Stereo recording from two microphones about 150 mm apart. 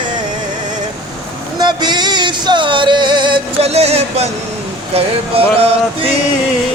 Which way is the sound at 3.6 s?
45° right (ahead or behind).